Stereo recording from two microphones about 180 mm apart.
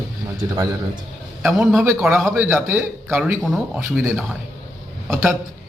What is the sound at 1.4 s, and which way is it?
A man's voice, 5° right (ahead or behind).